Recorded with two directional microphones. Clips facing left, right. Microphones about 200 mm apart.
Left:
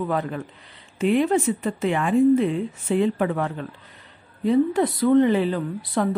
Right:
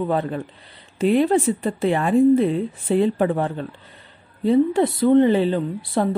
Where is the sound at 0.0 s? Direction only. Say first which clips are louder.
Right 3 dB; 30° right (ahead or behind).